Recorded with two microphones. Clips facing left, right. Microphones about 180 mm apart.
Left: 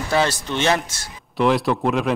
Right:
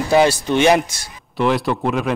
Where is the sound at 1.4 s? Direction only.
Centre (ahead or behind).